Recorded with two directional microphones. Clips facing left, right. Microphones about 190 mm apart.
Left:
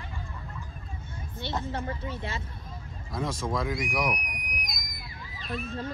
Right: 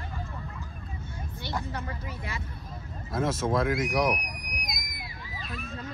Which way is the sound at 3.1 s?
5° right (ahead or behind).